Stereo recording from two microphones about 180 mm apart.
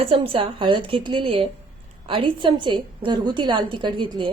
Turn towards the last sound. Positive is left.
turn(degrees=-25)  # may be behind; listen again after turning